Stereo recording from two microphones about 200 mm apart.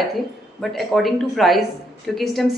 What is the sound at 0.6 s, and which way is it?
A woman's voice, centre (ahead or behind).